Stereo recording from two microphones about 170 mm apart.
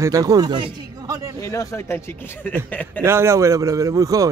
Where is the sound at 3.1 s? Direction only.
15° right (ahead or behind).